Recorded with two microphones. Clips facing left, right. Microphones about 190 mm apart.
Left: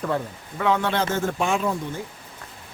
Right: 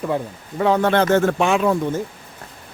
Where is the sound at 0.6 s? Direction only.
35° right (ahead or behind).